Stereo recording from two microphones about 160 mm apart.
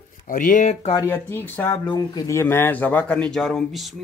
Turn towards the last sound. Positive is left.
turn(degrees=0)  # may be behind; listen again after turning